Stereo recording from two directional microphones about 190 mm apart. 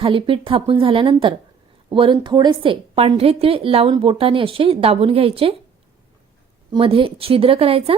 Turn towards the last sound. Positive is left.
turn(degrees=-30)  # may be behind; listen again after turning